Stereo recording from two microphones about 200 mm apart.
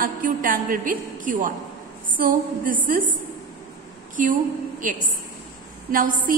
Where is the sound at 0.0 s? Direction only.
45° right (ahead or behind).